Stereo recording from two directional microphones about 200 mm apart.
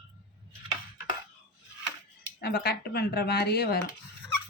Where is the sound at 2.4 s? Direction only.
50° left (ahead or behind).